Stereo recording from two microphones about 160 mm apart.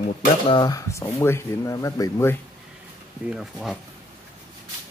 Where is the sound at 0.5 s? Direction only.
25° left (ahead or behind).